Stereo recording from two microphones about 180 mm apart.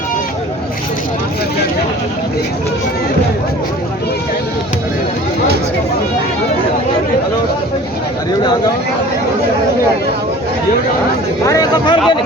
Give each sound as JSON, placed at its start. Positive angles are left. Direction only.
{"t": 11.4, "sound": "speech", "side_deg": 20}